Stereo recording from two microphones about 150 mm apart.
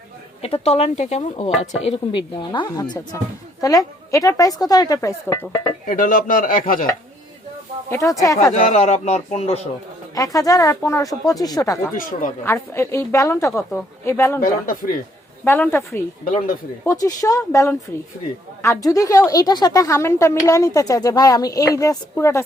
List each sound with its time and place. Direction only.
0.4 s speech: 45° left (ahead or behind)
1.8 s a woman's voice: 35° left (ahead or behind); by 5.5 s 15° left (ahead or behind)
5.8 s speech: 65° left (ahead or behind)
7.9 s a woman's voice: 20° left (ahead or behind)
8.6 s speech: 50° left (ahead or behind)
10.2 s a woman's voice: 25° left (ahead or behind)
15.4 s a woman's voice: 15° left (ahead or behind)
16.2 s a man's voice: 70° left (ahead or behind)
16.8 s a woman's voice: 20° left (ahead or behind)